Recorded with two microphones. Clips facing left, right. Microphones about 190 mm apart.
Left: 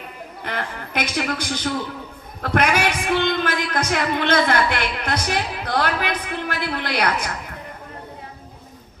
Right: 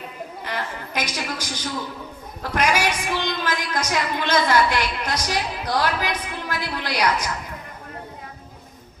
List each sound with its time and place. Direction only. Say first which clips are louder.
0.4 s a man's voice: left 2 dB; 60° left (ahead or behind)